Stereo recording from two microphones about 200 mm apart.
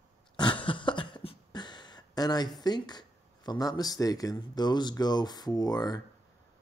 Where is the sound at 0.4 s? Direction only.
25° left (ahead or behind).